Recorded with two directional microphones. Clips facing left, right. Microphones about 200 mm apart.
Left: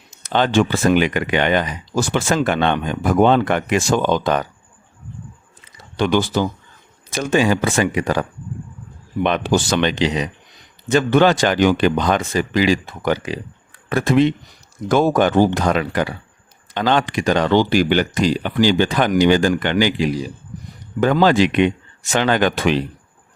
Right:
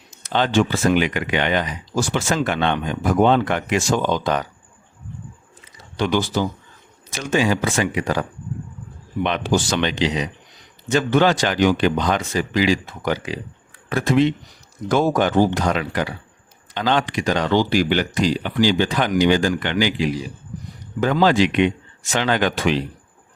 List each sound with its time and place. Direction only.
0.2 s speech: 50° left (ahead or behind)
6.0 s speech: 60° left (ahead or behind)
7.1 s speech: 50° left (ahead or behind)
9.2 s speech: 50° left (ahead or behind)